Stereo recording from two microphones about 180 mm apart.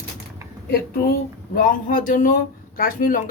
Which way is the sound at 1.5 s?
50° left (ahead or behind).